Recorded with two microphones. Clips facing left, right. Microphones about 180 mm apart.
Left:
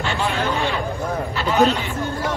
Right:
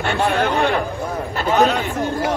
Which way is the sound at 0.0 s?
60° right (ahead or behind).